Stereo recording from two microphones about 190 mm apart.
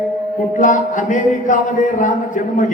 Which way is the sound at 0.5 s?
40° left (ahead or behind).